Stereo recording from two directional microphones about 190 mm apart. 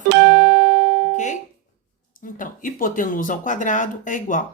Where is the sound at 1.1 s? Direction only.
40° left (ahead or behind).